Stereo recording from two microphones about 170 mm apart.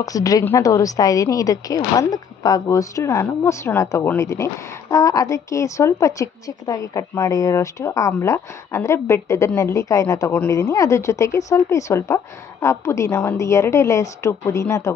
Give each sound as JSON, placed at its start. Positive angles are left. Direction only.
{"t": 0.0, "sound": "a woman's voice", "side_deg": 20}